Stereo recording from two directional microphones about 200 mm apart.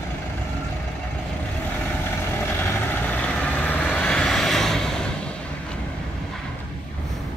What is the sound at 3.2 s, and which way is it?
Vehicle, 5° left (ahead or behind).